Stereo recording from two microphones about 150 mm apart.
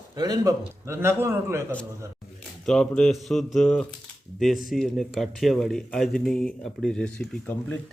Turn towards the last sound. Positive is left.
turn(degrees=10)  # may be behind; listen again after turning